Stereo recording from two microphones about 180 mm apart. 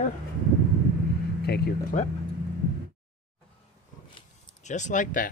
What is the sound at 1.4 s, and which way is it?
Speech, 60° left (ahead or behind).